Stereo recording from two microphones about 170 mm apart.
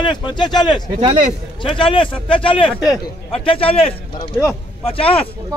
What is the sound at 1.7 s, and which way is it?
Speech, 30° left (ahead or behind).